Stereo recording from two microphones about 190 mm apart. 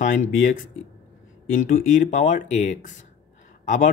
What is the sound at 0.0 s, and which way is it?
Speech, 40° left (ahead or behind).